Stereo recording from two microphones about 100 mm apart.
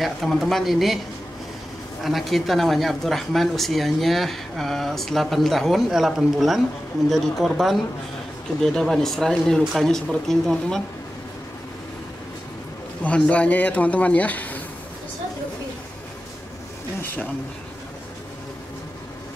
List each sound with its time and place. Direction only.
0.0 s speech: centre (ahead or behind)
2.0 s speech: centre (ahead or behind)
13.0 s speech: 15° left (ahead or behind)
17.0 s speech: 20° left (ahead or behind)